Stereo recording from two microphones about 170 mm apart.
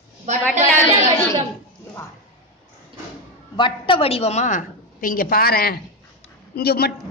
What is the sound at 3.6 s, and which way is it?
A woman's voice, 30° left (ahead or behind).